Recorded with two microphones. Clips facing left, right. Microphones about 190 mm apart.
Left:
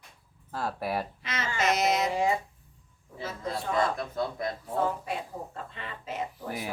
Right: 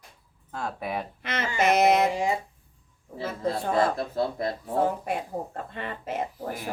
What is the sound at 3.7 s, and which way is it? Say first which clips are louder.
Speech: right 2 dB; 30° right (ahead or behind).